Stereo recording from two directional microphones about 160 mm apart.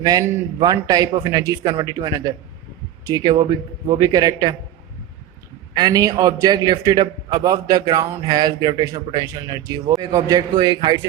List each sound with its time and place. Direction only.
0.0 s a man's voice: 25° right (ahead or behind)
5.7 s a man's voice: 25° right (ahead or behind)